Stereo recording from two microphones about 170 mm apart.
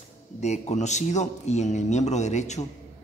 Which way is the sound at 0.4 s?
40° left (ahead or behind).